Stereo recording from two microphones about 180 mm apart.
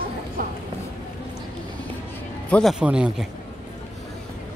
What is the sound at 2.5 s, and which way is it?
Speech, centre (ahead or behind).